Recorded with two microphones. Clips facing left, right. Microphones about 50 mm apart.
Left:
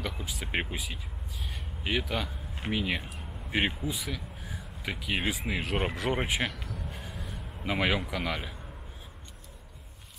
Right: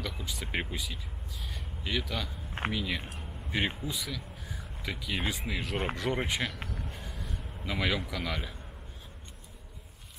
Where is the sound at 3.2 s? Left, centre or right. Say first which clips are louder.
Left 1 dB; centre.